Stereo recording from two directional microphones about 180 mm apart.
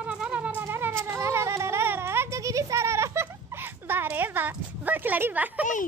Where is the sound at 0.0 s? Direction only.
5° right (ahead or behind).